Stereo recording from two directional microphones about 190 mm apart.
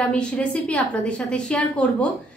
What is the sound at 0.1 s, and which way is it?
A woman's voice, 5° left (ahead or behind).